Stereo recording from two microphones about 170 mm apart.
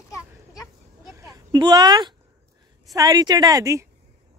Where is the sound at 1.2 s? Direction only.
20° right (ahead or behind).